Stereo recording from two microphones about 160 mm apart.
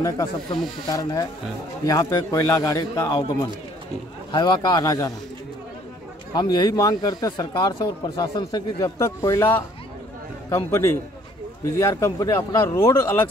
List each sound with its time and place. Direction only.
0.0 s speech: 25° left (ahead or behind)
6.3 s speech: 25° left (ahead or behind)
11.8 s speech: 20° left (ahead or behind)